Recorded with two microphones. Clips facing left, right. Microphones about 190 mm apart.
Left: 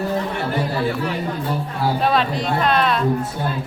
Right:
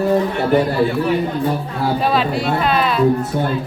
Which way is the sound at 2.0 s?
Centre (ahead or behind).